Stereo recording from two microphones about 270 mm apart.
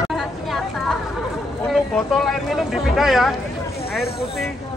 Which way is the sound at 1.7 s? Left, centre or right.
Centre.